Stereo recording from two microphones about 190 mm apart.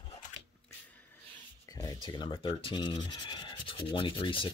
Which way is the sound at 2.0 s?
25° left (ahead or behind).